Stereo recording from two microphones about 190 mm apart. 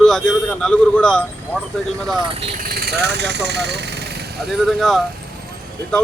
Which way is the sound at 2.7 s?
55° right (ahead or behind).